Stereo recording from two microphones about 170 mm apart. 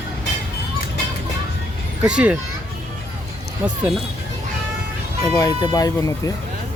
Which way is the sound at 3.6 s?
5° right (ahead or behind).